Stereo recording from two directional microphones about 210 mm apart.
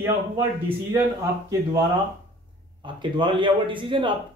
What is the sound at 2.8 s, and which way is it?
A man's voice, 25° right (ahead or behind).